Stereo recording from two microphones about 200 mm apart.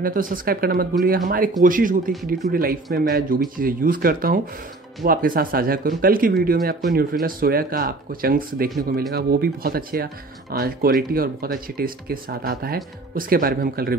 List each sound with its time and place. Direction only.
0.0 s speech: 45° right (ahead or behind)